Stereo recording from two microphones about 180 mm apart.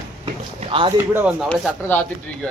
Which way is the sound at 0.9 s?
10° right (ahead or behind).